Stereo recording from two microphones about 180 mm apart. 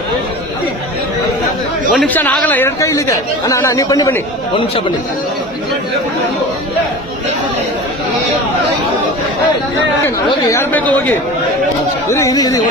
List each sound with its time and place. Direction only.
1.9 s speech: 5° left (ahead or behind); by 4.9 s 30° left (ahead or behind)
10.0 s speech: 15° left (ahead or behind)
12.2 s speech: 20° left (ahead or behind)